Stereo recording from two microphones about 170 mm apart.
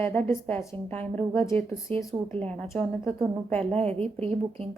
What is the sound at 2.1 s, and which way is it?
Speech, 15° right (ahead or behind).